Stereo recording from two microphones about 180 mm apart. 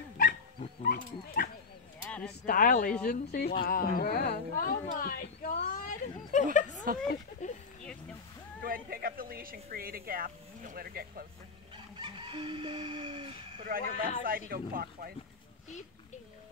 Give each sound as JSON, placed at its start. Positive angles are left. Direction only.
{"t": 0.2, "sound": "dog", "side_deg": 50}
{"t": 2.0, "sound": "a sound", "side_deg": 5}
{"t": 2.4, "sound": "speech", "side_deg": 50}
{"t": 3.1, "sound": "a woman's voice", "side_deg": 60}
{"t": 6.5, "sound": "a sound", "side_deg": 45}
{"t": 8.6, "sound": "speech", "side_deg": -55}
{"t": 11.7, "sound": "chicken", "side_deg": -25}
{"t": 13.7, "sound": "speech", "side_deg": -50}